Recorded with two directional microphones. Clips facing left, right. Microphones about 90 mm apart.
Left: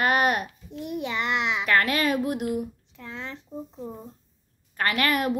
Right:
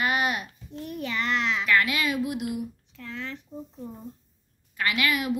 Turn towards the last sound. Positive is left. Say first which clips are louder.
# left 2 dB
turn(degrees=45)  # may be behind; listen again after turning